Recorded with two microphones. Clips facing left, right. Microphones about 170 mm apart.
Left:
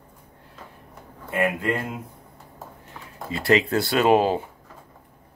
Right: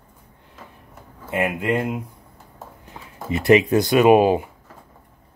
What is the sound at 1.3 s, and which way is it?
Speech, 20° right (ahead or behind).